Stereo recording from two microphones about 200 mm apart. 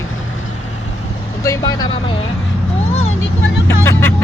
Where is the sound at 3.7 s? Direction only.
10° left (ahead or behind).